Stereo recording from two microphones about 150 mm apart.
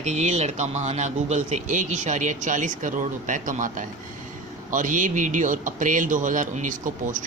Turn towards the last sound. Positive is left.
turn(degrees=-60)  # may be behind; listen again after turning